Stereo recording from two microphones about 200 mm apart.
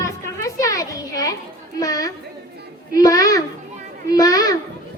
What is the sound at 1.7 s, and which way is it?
Chatter, 20° left (ahead or behind).